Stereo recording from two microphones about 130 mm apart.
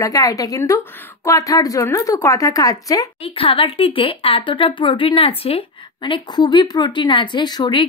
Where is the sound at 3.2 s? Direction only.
40° left (ahead or behind).